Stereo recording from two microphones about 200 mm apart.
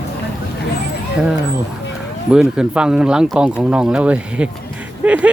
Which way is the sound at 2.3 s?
5° right (ahead or behind).